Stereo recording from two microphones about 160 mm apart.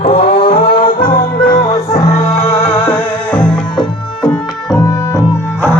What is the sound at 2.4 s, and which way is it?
Music, 15° left (ahead or behind).